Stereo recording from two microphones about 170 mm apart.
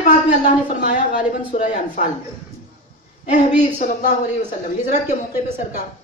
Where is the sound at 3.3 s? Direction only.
50° left (ahead or behind).